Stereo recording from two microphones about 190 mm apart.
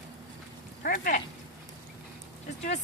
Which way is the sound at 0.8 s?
45° left (ahead or behind).